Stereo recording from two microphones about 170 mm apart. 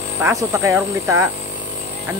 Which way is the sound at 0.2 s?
15° right (ahead or behind).